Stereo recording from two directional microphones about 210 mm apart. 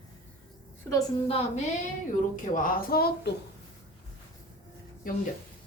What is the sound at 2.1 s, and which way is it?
Speech, 40° left (ahead or behind).